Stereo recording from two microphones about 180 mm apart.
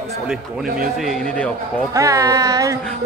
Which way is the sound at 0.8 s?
Centre (ahead or behind).